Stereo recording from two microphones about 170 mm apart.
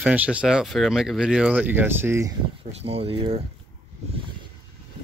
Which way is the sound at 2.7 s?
35° right (ahead or behind).